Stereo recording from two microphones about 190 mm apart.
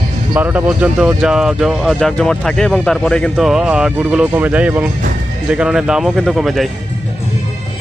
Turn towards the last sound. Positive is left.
turn(degrees=0)  # may be behind; listen again after turning